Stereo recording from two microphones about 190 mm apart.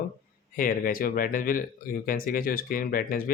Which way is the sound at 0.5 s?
45° left (ahead or behind).